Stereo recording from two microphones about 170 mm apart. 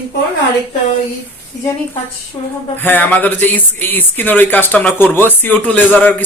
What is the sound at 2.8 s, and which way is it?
Speech, 10° left (ahead or behind).